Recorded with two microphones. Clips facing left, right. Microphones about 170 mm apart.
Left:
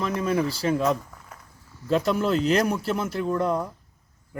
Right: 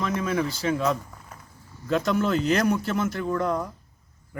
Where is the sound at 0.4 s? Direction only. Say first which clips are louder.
Left 2 dB; 35° left (ahead or behind).